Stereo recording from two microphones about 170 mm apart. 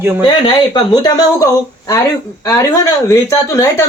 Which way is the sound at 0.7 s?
25° left (ahead or behind).